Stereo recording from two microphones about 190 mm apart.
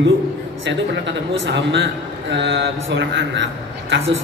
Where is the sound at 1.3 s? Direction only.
70° right (ahead or behind).